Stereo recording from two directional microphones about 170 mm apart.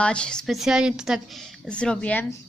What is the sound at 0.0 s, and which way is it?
A woman's voice, 5° left (ahead or behind).